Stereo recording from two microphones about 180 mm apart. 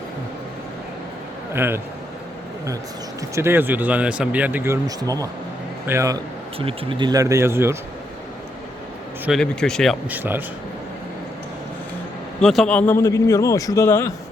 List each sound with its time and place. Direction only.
1.5 s speech: 15° right (ahead or behind)
3.3 s speech: 15° right (ahead or behind)
6.6 s speech: 30° right (ahead or behind); by 7.8 s 15° right (ahead or behind)
9.2 s speech: centre (ahead or behind)
10.1 s speech: 10° right (ahead or behind)
12.4 s speech: 5° left (ahead or behind)